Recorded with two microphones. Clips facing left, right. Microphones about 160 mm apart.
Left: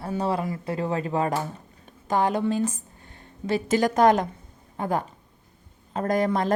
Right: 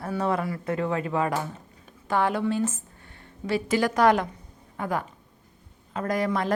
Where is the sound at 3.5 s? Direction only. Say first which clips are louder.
Left 2 dB; 45° left (ahead or behind).